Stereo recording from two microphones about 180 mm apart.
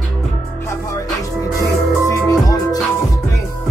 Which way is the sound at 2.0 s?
20° left (ahead or behind).